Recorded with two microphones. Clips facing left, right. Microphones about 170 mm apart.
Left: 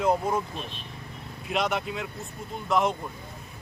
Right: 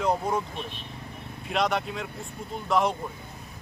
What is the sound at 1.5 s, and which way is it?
Speech, centre (ahead or behind).